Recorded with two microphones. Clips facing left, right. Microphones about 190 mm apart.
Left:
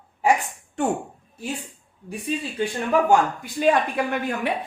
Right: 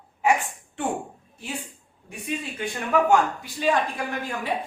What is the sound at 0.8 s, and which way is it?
Speech, 45° left (ahead or behind).